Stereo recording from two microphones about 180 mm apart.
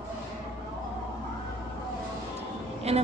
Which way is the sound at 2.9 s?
35° right (ahead or behind).